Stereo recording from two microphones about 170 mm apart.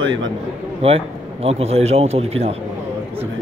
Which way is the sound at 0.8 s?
35° right (ahead or behind).